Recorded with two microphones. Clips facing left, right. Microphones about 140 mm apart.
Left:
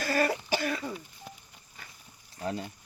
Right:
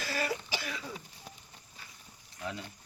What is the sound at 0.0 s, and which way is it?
Cough, 50° left (ahead or behind).